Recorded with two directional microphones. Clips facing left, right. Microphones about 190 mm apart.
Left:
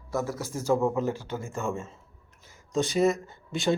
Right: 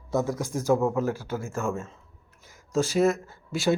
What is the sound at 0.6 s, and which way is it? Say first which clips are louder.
Speech: right 1 dB; 5° right (ahead or behind).